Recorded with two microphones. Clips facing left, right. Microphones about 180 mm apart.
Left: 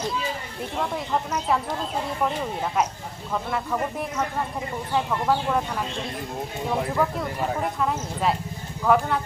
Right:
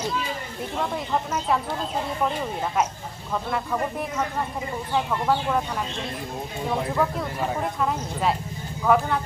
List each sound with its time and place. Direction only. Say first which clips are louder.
0.8 s speech: even; centre (ahead or behind)